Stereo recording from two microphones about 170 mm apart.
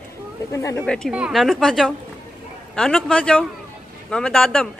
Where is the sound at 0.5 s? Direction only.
20° left (ahead or behind).